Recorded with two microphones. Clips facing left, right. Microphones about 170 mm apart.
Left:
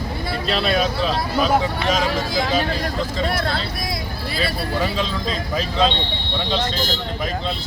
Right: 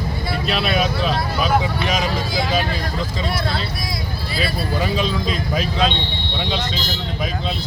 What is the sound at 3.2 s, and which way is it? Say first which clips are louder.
Speech: even; 55° left (ahead or behind).